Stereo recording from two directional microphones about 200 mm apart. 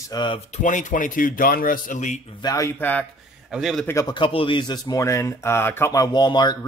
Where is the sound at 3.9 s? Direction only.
20° left (ahead or behind).